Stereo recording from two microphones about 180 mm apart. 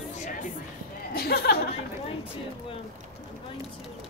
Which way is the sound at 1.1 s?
60° left (ahead or behind).